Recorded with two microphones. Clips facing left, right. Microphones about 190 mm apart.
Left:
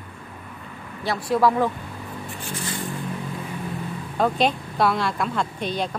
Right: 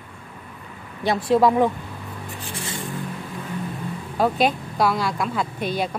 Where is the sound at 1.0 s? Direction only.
20° right (ahead or behind).